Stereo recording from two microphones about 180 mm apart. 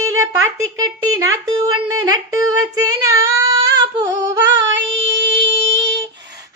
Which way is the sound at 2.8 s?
20° right (ahead or behind).